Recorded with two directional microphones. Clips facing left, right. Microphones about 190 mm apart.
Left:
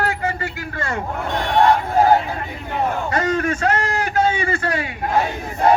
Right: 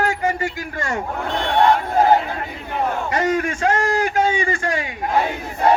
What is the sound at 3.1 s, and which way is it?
A man's voice, 10° right (ahead or behind).